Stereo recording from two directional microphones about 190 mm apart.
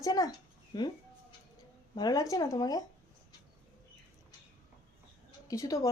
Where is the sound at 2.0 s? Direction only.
20° left (ahead or behind).